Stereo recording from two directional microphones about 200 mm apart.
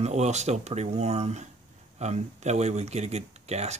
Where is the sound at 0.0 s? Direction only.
35° right (ahead or behind).